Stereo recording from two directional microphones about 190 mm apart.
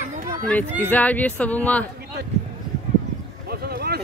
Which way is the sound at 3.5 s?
55° right (ahead or behind).